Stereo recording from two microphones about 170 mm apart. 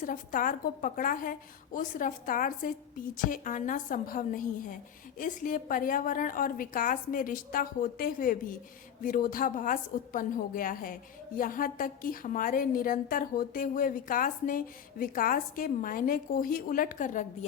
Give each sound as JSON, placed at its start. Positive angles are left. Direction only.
{"t": 0.0, "sound": "a woman's voice", "side_deg": 50}